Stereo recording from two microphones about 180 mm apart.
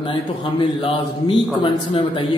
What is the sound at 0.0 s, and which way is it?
A man's voice, 30° left (ahead or behind).